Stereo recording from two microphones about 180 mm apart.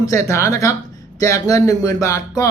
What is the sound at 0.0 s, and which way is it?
Speech, 15° left (ahead or behind).